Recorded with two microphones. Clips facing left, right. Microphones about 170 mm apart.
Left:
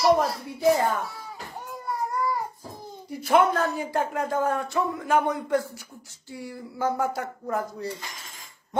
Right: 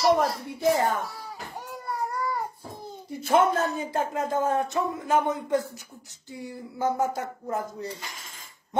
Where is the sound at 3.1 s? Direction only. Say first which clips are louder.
Left 1 dB; 25° right (ahead or behind).